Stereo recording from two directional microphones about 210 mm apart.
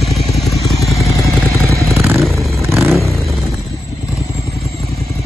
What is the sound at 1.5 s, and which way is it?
Vehicle, 15° right (ahead or behind).